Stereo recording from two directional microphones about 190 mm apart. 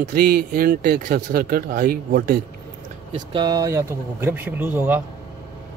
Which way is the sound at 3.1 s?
20° right (ahead or behind).